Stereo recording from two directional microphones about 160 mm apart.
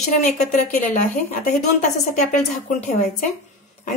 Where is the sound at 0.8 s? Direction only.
50° left (ahead or behind).